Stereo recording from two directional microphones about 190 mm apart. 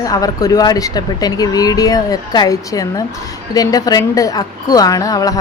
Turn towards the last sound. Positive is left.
turn(degrees=20)  # may be behind; listen again after turning